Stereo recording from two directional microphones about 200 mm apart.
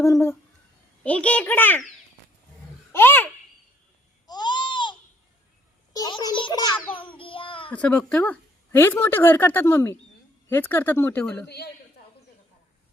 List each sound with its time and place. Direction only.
0.0 s speech: 15° left (ahead or behind)
2.9 s a child's voice: 10° left (ahead or behind)
4.3 s babbling: 20° left (ahead or behind)
5.9 s a child's voice: 20° left (ahead or behind)
6.9 s child singing: 25° left (ahead or behind)
7.7 s speech: 5° left (ahead or behind)
11.4 s a woman's voice: 55° left (ahead or behind)